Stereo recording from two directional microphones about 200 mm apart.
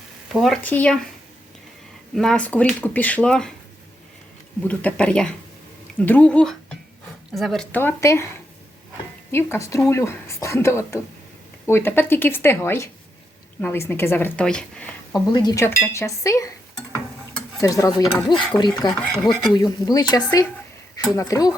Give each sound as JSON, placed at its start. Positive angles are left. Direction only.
{"t": 0.3, "sound": "speech", "side_deg": 0}
{"t": 2.1, "sound": "speech", "side_deg": 5}
{"t": 4.6, "sound": "speech", "side_deg": 5}
{"t": 9.3, "sound": "speech", "side_deg": 15}
{"t": 15.1, "sound": "speech", "side_deg": 20}
{"t": 17.6, "sound": "speech", "side_deg": 15}
{"t": 19.1, "sound": "speech", "side_deg": 0}
{"t": 19.4, "sound": "speech", "side_deg": 20}